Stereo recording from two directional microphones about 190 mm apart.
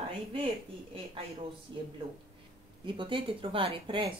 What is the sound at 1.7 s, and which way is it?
Speech, 25° right (ahead or behind).